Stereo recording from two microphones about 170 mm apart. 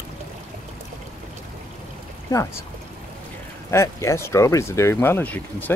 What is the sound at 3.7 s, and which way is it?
Speech, 15° left (ahead or behind).